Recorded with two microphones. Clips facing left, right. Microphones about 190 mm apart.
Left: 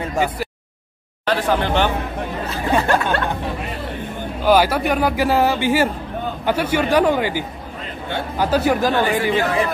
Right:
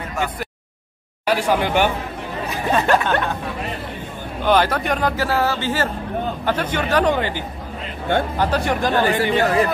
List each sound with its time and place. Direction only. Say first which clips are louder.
0.2 s a sound: left 4 dB; 35° left (ahead or behind)
1.2 s speech: even; 10° right (ahead or behind)
4.5 s speech: left 2 dB; 10° left (ahead or behind)
9.4 s speech: right 2 dB; 40° right (ahead or behind)